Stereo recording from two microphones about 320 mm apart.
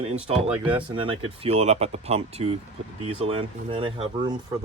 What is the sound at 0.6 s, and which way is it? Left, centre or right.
Speech, centre.